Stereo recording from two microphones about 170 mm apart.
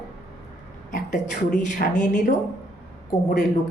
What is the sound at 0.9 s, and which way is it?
A woman's voice, 45° left (ahead or behind).